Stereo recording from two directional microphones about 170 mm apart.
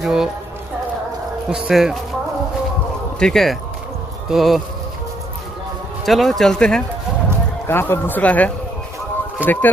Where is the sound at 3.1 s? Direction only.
5° left (ahead or behind).